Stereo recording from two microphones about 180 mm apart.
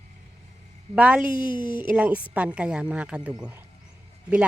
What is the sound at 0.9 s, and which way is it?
Speech, 5° right (ahead or behind).